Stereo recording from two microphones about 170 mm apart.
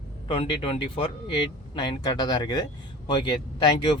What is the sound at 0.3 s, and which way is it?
Speech, 30° left (ahead or behind).